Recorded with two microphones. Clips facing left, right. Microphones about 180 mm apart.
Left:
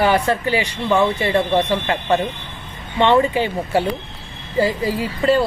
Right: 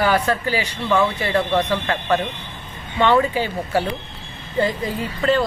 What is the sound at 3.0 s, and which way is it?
Speech, 20° left (ahead or behind).